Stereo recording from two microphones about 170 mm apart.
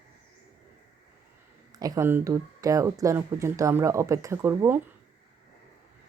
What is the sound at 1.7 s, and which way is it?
Speech, 20° right (ahead or behind).